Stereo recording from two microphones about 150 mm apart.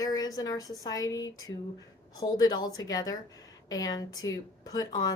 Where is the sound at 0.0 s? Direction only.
25° left (ahead or behind).